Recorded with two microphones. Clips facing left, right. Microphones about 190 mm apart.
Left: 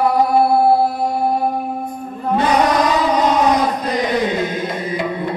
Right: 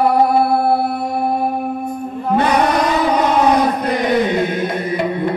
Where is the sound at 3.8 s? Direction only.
60° right (ahead or behind).